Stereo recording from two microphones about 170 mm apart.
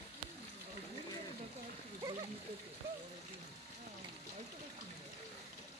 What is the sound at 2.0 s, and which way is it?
Splash, 25° right (ahead or behind).